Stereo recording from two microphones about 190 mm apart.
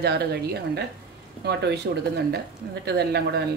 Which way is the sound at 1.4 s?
60° right (ahead or behind).